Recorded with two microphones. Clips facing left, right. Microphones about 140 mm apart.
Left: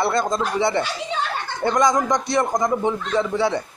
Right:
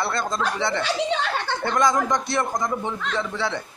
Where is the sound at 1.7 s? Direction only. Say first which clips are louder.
Left 3 dB; 15° left (ahead or behind).